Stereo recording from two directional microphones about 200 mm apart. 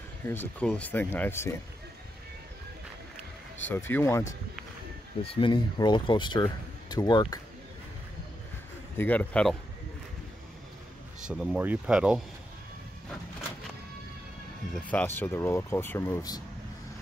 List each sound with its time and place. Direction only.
0.2 s speech: 10° left (ahead or behind)
3.6 s speech: 10° left (ahead or behind)
5.2 s speech: 25° left (ahead or behind)
8.9 s speech: 10° left (ahead or behind)
11.2 s speech: 5° right (ahead or behind)
14.9 s speech: 10° left (ahead or behind)